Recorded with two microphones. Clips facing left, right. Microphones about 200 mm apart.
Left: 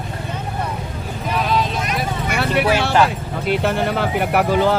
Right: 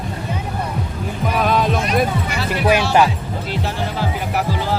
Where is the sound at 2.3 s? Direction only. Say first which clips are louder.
Left 3 dB; 60° left (ahead or behind).